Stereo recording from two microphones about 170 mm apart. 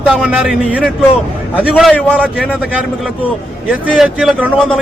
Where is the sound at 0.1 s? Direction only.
5° right (ahead or behind).